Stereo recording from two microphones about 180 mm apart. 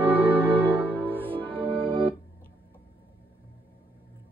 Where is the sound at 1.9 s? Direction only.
30° right (ahead or behind).